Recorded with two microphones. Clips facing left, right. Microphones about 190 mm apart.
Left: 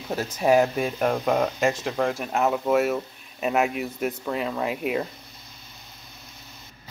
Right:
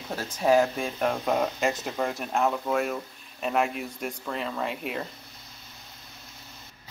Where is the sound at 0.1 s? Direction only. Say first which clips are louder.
Left 2 dB; 10° left (ahead or behind).